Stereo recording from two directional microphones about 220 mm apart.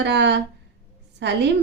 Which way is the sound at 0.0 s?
50° right (ahead or behind).